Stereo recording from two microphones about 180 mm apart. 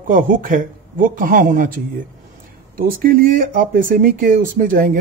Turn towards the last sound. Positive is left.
turn(degrees=-50)  # may be behind; listen again after turning